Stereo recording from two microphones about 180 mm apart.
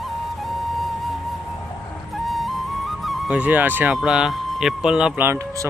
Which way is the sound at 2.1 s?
Centre (ahead or behind).